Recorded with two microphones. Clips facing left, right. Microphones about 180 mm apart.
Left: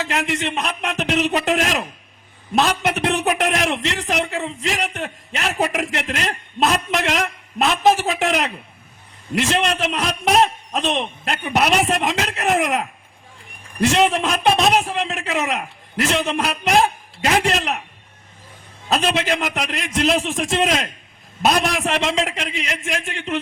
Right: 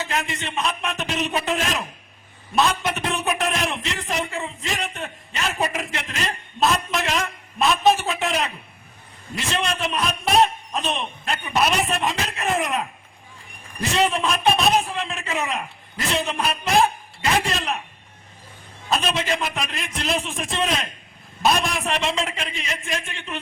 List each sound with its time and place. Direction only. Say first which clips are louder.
0.1 s a man's voice: left 5 dB; 75° left (ahead or behind)
14.2 s a man's voice: left 3 dB; 80° left
18.9 s a man's voice: left 3 dB; 75° left (ahead or behind)